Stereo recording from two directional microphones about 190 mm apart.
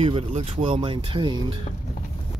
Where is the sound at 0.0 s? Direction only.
30° right (ahead or behind).